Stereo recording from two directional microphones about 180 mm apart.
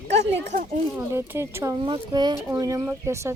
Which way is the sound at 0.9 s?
15° right (ahead or behind).